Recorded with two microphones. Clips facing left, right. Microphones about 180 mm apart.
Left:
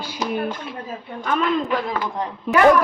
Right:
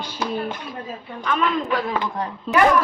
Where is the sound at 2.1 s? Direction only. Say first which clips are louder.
Left 1 dB; 20° left (ahead or behind).